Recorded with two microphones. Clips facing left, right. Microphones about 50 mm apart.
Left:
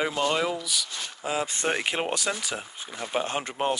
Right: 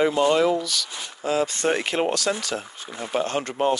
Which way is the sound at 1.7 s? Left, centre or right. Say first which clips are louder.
Right 2 dB; centre.